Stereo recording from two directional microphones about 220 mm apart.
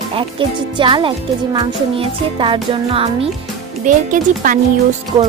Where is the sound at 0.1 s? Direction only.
25° right (ahead or behind).